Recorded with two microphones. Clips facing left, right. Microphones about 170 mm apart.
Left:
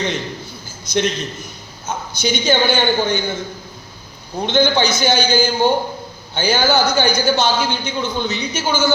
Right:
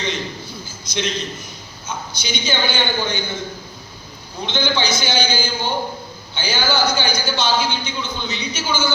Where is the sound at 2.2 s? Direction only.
50° left (ahead or behind).